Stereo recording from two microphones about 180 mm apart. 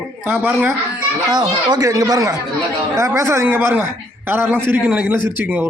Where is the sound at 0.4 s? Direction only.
10° right (ahead or behind).